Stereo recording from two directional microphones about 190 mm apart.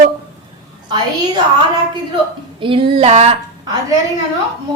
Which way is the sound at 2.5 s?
25° right (ahead or behind).